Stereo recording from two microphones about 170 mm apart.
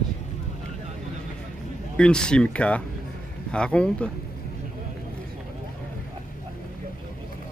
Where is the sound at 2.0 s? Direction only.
5° left (ahead or behind).